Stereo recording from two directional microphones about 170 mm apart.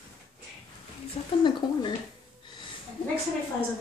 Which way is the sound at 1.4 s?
30° left (ahead or behind).